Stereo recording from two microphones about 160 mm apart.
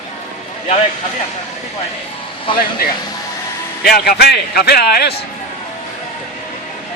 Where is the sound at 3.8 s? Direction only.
70° left (ahead or behind); by 5.2 s 90° left.